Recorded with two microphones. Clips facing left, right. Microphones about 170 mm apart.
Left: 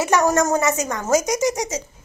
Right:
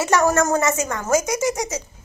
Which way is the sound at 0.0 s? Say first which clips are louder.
Even; 15° left (ahead or behind).